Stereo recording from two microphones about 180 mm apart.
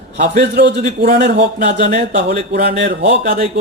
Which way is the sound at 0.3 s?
70° right (ahead or behind).